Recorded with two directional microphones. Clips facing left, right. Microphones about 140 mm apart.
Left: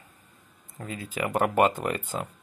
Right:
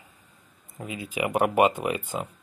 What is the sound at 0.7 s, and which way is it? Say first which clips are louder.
Speech: right 2 dB; 10° right (ahead or behind).